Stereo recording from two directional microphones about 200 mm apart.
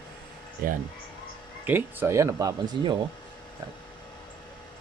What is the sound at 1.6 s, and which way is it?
Speech, 10° right (ahead or behind).